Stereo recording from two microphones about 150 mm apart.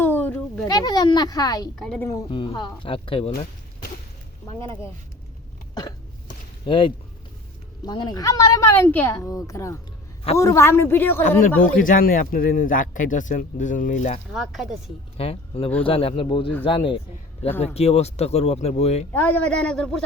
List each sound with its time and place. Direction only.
0.0 s a sound: 15° left (ahead or behind)
0.7 s a child's voice: 25° left (ahead or behind)
6.7 s a woman's voice: 35° left (ahead or behind); by 11.2 s 15° left (ahead or behind)
11.2 s a man's voice: 60° left (ahead or behind)
14.3 s speech: centre (ahead or behind)
15.2 s speech: 40° left (ahead or behind)
19.1 s a man's voice: 10° left (ahead or behind)